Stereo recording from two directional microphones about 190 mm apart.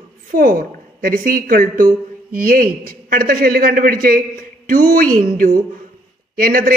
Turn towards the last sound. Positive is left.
turn(degrees=-50)  # may be behind; listen again after turning